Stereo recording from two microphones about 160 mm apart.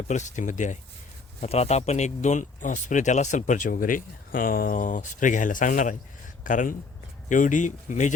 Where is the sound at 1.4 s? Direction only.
40° left (ahead or behind).